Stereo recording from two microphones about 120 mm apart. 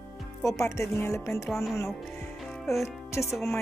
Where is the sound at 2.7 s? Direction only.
25° left (ahead or behind).